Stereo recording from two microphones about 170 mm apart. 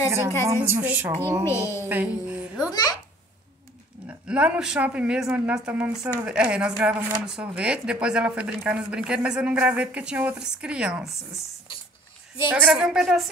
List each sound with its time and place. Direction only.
0.1 s speech: 15° right (ahead or behind)
1.4 s a woman's voice: 15° left (ahead or behind)
1.9 s speech: 10° right (ahead or behind)
2.7 s a child's voice: 20° left (ahead or behind)
4.1 s speech: 5° right (ahead or behind)
12.4 s a woman's voice: 5° right (ahead or behind)